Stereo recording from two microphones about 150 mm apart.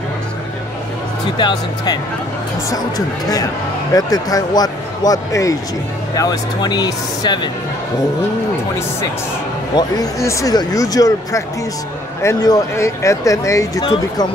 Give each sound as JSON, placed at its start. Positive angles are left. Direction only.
{"t": 3.9, "sound": "speech", "side_deg": 25}
{"t": 9.8, "sound": "speech", "side_deg": 25}